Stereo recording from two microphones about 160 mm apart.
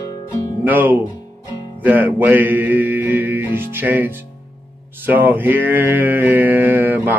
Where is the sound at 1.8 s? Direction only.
10° right (ahead or behind).